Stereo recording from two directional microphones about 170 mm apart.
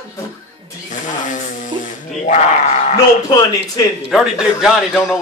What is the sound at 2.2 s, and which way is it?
Speech, 40° left (ahead or behind).